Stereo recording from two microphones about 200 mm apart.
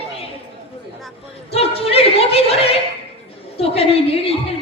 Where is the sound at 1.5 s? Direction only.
30° left (ahead or behind).